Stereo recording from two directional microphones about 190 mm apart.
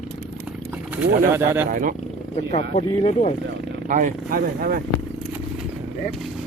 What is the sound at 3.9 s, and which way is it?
Speech, 45° right (ahead or behind).